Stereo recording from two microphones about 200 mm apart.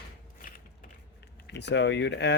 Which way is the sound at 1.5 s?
60° left (ahead or behind).